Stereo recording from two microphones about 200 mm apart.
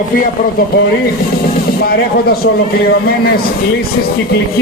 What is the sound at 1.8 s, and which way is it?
Speech, 50° left (ahead or behind).